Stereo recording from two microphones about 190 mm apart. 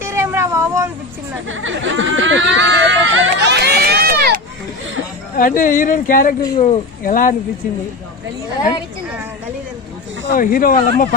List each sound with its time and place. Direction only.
0.0 s vehicle: 10° right (ahead or behind)
1.5 s chatter: 90° right; by 4.4 s 55° right (ahead or behind)
5.3 s speech: 45° left (ahead or behind)
10.3 s speech: 50° left (ahead or behind)